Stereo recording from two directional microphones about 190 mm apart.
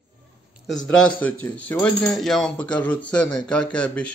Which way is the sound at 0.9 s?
10° left (ahead or behind).